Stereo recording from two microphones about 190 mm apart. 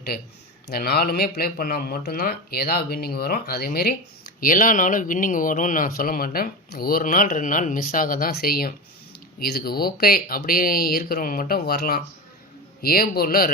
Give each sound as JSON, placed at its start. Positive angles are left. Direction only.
{"t": 0.7, "sound": "speech", "side_deg": 55}